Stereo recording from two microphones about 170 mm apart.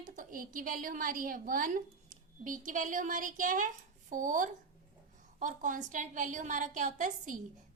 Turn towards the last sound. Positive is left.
turn(degrees=-50)  # may be behind; listen again after turning